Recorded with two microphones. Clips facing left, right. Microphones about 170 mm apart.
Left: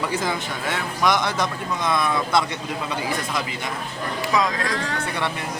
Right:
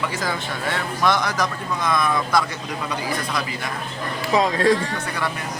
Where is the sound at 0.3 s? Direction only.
15° left (ahead or behind).